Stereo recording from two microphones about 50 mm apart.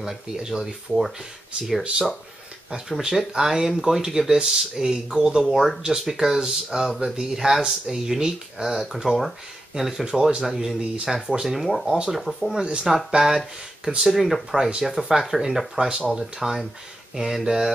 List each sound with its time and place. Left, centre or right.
0.0 s speech: centre
10.4 s speech: centre
12.5 s speech: centre